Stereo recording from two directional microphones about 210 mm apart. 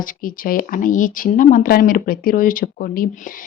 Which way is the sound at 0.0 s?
40° left (ahead or behind).